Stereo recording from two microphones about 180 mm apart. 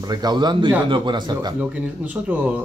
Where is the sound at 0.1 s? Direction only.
25° right (ahead or behind).